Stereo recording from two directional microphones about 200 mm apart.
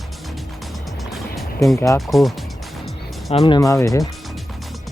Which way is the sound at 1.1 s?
Centre (ahead or behind).